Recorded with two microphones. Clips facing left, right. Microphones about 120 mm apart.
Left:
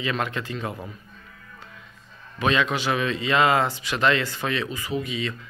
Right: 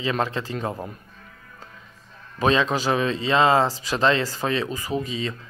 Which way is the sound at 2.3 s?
35° right (ahead or behind).